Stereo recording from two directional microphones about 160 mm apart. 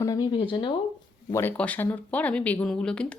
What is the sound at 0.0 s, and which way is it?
Speech, 25° left (ahead or behind).